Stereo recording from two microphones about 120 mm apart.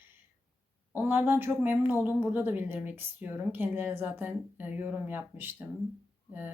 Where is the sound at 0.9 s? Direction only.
20° right (ahead or behind).